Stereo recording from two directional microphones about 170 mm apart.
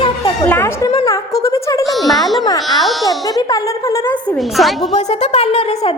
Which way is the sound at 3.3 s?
20° left (ahead or behind).